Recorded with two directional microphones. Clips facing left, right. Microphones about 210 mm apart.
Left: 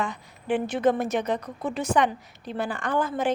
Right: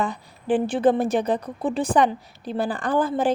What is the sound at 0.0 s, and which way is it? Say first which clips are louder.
A woman's voice: right 4 dB; 35° right (ahead or behind).